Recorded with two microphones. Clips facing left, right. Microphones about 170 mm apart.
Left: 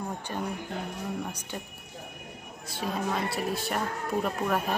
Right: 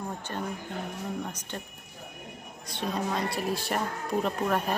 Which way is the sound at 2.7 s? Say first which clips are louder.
Even; 5° left (ahead or behind).